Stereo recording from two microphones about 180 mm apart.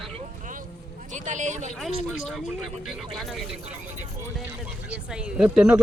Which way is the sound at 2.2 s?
Centre (ahead or behind).